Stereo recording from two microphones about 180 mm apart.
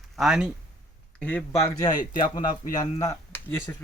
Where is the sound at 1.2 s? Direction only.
10° left (ahead or behind).